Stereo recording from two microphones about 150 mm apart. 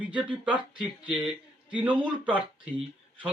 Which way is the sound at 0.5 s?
30° right (ahead or behind).